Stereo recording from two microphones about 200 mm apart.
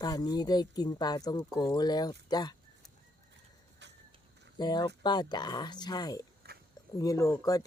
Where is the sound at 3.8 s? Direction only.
60° right (ahead or behind).